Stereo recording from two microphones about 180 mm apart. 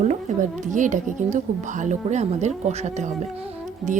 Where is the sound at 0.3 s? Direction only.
40° right (ahead or behind).